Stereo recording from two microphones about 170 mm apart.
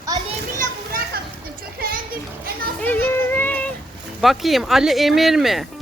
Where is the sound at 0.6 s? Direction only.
60° right (ahead or behind).